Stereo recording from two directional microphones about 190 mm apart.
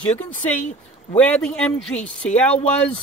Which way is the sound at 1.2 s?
5° left (ahead or behind).